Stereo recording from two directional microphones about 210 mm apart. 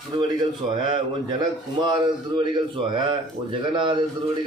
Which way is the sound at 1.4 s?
20° right (ahead or behind).